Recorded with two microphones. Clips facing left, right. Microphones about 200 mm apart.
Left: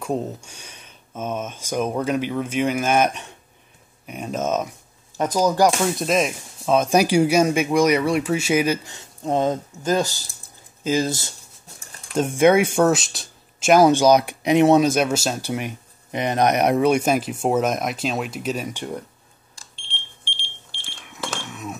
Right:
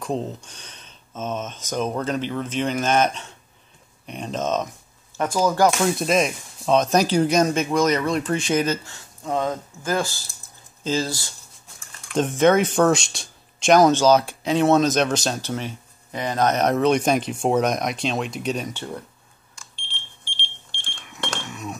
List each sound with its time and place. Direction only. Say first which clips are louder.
0.0 s speech: left 1 dB; 10° left (ahead or behind)
5.8 s speech: even; centre (ahead or behind); by 11.3 s 20° left (ahead or behind)
12.2 s speech: left 1 dB; 10° left (ahead or behind)
20.7 s a sound: left 2 dB; 5° left (ahead or behind)